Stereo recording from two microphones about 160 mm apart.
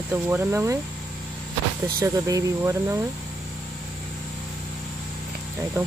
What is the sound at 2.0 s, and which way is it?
Speech, 20° right (ahead or behind).